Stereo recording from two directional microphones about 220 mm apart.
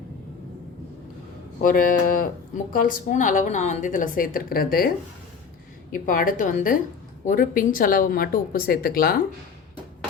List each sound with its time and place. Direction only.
1.6 s a woman's voice: 40° left (ahead or behind)
5.9 s a woman's voice: 40° left (ahead or behind)